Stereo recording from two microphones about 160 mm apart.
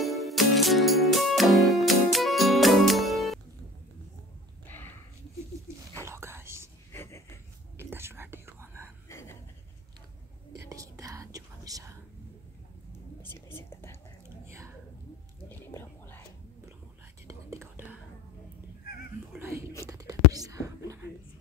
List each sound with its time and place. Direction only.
0.0 s music: centre (ahead or behind)
4.6 s a sound: 10° left (ahead or behind)
6.0 s whispering: 15° right (ahead or behind)
6.9 s a sound: 15° left (ahead or behind)
7.7 s whispering: 15° right (ahead or behind)
9.1 s a sound: 15° left (ahead or behind)
10.7 s whispering: 20° right (ahead or behind)
13.2 s whispering: 15° left (ahead or behind)
14.4 s whispering: 15° right (ahead or behind)
15.4 s whispering: 15° left (ahead or behind)
17.3 s whispering: 15° right (ahead or behind)
18.9 s cat: 70° left (ahead or behind)
19.3 s whispering: 15° right (ahead or behind)